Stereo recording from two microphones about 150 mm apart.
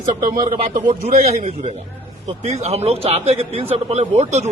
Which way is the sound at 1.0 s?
55° right (ahead or behind).